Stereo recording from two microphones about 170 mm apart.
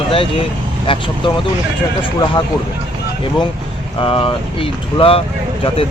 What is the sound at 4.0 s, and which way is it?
Speech, 30° left (ahead or behind).